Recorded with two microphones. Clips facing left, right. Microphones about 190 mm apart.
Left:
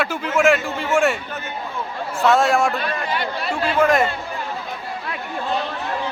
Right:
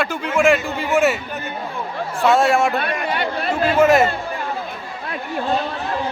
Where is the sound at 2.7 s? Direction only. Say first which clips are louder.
Right 2 dB; 60° right (ahead or behind).